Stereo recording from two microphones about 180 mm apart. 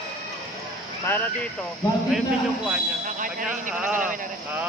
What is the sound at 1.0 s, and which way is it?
Speech, 15° left (ahead or behind).